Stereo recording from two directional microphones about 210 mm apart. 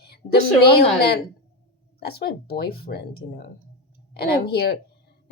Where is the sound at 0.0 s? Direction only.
50° left (ahead or behind).